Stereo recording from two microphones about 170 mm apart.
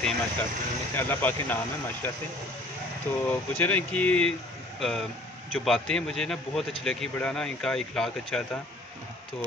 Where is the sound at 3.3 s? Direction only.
10° left (ahead or behind).